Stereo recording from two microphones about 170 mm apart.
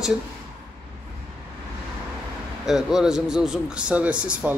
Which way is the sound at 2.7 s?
5° right (ahead or behind).